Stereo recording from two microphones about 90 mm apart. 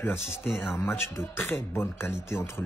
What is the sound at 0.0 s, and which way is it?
A man's voice, 25° left (ahead or behind).